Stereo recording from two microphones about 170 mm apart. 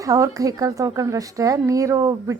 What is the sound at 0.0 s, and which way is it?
A woman's voice, 20° right (ahead or behind).